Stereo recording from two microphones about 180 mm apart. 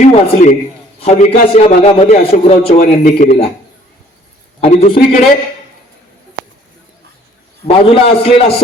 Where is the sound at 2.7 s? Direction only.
45° left (ahead or behind).